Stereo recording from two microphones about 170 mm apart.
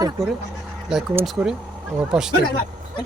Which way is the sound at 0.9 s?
5° right (ahead or behind).